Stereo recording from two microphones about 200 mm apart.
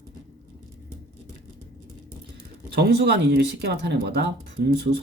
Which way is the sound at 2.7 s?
55° right (ahead or behind).